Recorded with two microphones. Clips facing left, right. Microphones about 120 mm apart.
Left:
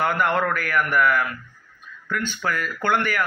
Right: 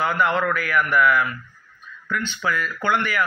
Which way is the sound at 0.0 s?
50° left (ahead or behind).